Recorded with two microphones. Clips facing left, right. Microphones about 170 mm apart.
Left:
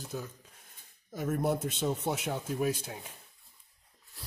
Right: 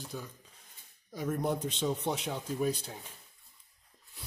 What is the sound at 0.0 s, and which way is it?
Speech, centre (ahead or behind).